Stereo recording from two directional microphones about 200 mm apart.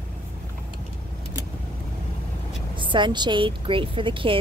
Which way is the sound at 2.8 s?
25° right (ahead or behind).